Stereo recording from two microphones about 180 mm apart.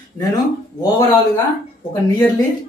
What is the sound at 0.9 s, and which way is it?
Speech, 20° left (ahead or behind).